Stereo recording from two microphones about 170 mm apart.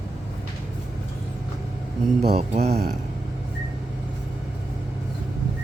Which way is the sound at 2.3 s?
40° right (ahead or behind).